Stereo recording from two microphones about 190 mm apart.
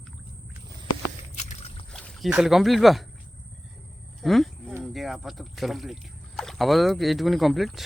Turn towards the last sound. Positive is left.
turn(degrees=0)  # may be behind; listen again after turning